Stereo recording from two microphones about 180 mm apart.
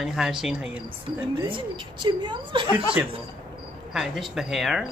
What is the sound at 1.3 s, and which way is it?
Speech, 25° right (ahead or behind).